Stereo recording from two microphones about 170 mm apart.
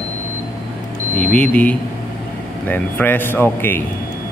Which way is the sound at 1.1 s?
10° left (ahead or behind).